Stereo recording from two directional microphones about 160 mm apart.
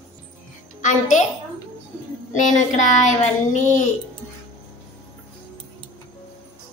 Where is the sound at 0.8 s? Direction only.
50° left (ahead or behind).